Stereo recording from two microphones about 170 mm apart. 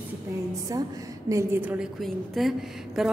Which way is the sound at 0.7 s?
20° right (ahead or behind).